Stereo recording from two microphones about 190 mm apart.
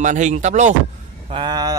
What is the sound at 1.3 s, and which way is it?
Speech, 25° right (ahead or behind).